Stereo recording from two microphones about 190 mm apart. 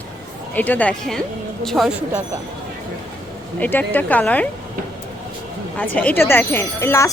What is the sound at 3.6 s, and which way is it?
Speech, 10° left (ahead or behind).